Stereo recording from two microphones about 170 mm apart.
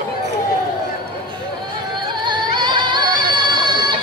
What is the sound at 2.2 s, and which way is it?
Music, 25° right (ahead or behind).